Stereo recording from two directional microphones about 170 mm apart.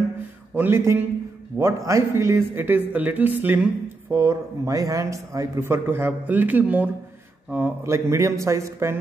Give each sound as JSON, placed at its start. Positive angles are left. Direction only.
{"t": 0.6, "sound": "a man's voice", "side_deg": -15}